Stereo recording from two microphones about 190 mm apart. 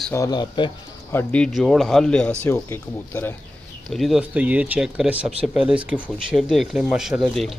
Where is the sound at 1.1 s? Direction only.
5° left (ahead or behind).